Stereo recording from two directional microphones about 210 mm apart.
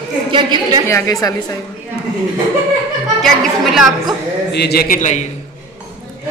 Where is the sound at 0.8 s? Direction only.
15° left (ahead or behind).